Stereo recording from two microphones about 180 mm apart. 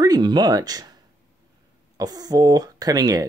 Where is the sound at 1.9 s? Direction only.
20° right (ahead or behind).